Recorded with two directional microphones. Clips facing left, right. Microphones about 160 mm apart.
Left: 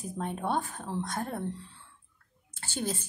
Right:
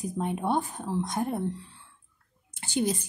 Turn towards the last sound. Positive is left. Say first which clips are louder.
# right 6 dB
turn(degrees=-15)  # may be behind; listen again after turning